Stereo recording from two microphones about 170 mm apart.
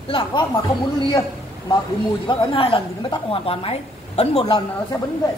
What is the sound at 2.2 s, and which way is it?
A woman's voice, 30° left (ahead or behind).